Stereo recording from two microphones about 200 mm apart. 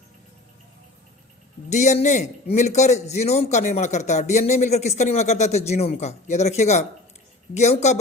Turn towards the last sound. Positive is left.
turn(degrees=35)  # may be behind; listen again after turning